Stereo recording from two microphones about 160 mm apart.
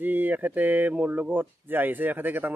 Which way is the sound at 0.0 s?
10° right (ahead or behind).